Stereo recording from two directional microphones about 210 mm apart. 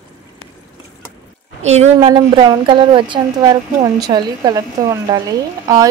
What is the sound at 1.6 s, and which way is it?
A woman's voice, 30° right (ahead or behind).